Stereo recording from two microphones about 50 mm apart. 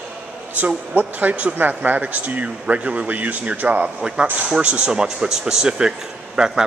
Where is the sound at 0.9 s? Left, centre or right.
Right.